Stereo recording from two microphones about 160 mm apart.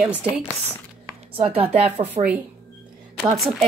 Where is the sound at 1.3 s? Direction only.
35° right (ahead or behind).